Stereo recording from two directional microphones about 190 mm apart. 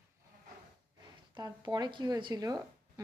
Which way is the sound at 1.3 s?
20° right (ahead or behind).